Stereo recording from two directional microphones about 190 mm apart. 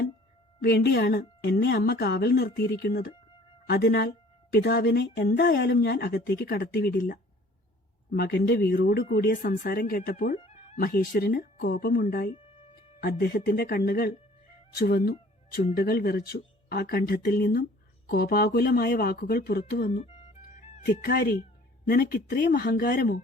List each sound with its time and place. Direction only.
0.6 s speech: 55° left (ahead or behind)
10.3 s a sound: 30° left (ahead or behind)
10.8 s speech: 50° left (ahead or behind)
20.6 s music: 35° left (ahead or behind)
20.8 s speech: 55° left (ahead or behind)